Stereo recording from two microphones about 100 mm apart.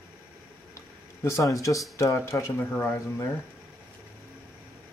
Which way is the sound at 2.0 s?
30° left (ahead or behind).